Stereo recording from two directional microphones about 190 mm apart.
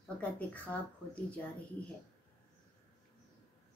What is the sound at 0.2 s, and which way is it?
Speech, 10° left (ahead or behind).